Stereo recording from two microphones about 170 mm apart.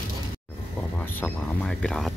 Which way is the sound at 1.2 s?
5° left (ahead or behind).